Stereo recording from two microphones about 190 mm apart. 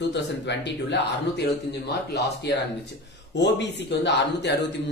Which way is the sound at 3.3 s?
65° left (ahead or behind).